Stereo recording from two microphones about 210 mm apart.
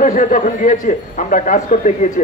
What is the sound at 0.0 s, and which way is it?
Speech, 40° left (ahead or behind).